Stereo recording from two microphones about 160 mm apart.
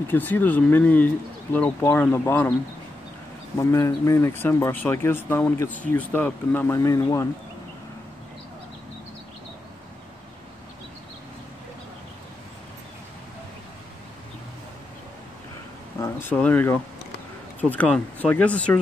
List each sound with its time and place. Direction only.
0.1 s speech: 10° left (ahead or behind)
3.5 s speech: 20° left (ahead or behind)
16.0 s speech: 15° left (ahead or behind)